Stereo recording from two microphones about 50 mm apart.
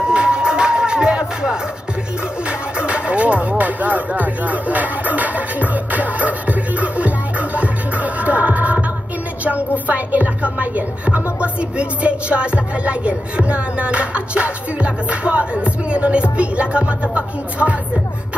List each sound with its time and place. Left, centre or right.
0.0 s music: centre
2.4 s speech: right